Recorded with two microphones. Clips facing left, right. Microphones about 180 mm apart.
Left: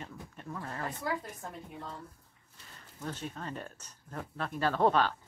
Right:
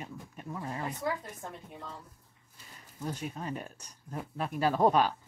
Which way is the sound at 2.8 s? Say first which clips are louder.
Right 3 dB; 10° right (ahead or behind).